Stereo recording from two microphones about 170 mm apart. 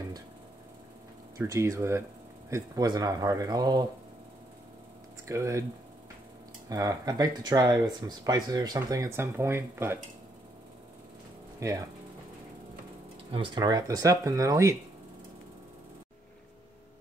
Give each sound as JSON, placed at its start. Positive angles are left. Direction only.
{"t": 1.4, "sound": "speech", "side_deg": -15}
{"t": 5.2, "sound": "speech", "side_deg": -20}
{"t": 6.7, "sound": "speech", "side_deg": -20}
{"t": 11.6, "sound": "speech", "side_deg": -15}
{"t": 13.3, "sound": "speech", "side_deg": -30}